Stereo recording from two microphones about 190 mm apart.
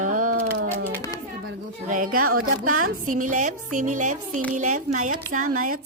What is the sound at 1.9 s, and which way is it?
A woman's voice, 45° right (ahead or behind).